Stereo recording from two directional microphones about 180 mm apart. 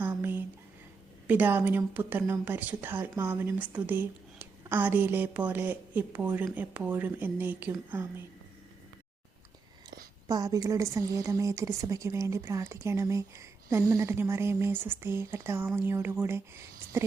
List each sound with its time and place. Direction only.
0.0 s a sound: 10° right (ahead or behind)
1.3 s a woman's voice: 10° right (ahead or behind)
10.2 s a woman's voice: 20° right (ahead or behind)